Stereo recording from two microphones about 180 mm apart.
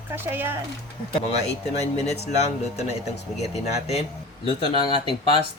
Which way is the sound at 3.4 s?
35° left (ahead or behind).